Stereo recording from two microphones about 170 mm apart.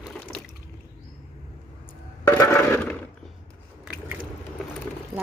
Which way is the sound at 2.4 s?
10° left (ahead or behind).